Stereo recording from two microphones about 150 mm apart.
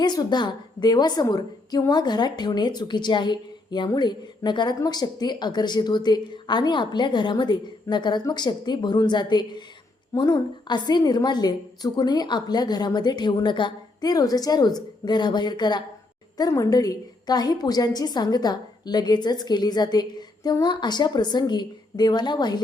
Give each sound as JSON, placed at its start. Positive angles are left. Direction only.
{"t": 0.0, "sound": "a woman's voice", "side_deg": 30}